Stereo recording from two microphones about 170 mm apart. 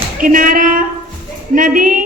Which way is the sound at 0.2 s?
55° right (ahead or behind).